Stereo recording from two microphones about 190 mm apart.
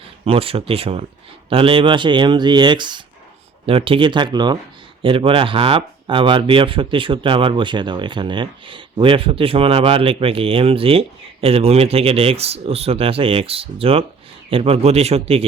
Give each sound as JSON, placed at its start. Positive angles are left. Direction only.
{"t": 0.0, "sound": "a man's voice", "side_deg": -30}